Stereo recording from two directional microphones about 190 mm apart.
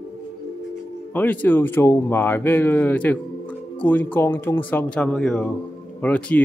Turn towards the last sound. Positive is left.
turn(degrees=5)  # may be behind; listen again after turning